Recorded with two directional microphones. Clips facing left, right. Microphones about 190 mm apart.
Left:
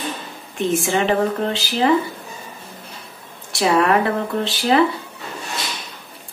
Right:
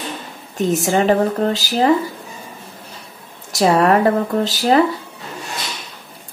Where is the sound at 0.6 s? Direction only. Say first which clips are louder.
Right 3 dB; 40° right (ahead or behind).